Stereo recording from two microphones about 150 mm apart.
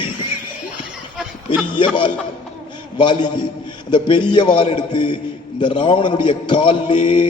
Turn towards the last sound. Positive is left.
turn(degrees=35)  # may be behind; listen again after turning